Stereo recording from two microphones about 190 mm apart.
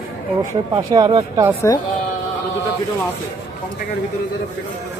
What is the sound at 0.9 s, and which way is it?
Speech, 20° right (ahead or behind).